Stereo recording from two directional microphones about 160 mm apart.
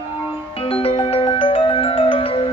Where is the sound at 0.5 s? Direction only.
35° left (ahead or behind).